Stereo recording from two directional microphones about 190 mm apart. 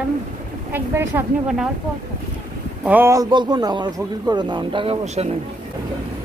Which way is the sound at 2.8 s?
10° right (ahead or behind).